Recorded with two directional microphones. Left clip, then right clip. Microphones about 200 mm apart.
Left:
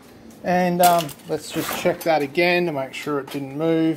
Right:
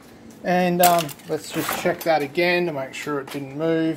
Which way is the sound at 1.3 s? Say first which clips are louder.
Even; 10° left (ahead or behind).